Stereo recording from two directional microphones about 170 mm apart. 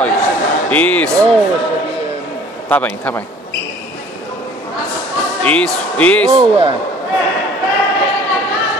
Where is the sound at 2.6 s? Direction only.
10° left (ahead or behind).